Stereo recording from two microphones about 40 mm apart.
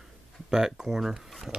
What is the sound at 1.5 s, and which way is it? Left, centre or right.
Speech, right.